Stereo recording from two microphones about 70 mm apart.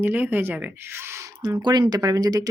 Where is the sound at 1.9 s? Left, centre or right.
Right.